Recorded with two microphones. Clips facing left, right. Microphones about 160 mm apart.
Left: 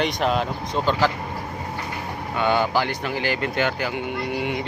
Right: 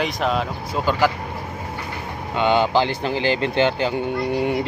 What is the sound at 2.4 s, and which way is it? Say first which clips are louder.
Speech: right 3 dB; 20° right (ahead or behind).